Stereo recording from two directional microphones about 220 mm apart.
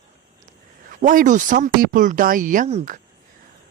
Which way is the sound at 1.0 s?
35° right (ahead or behind).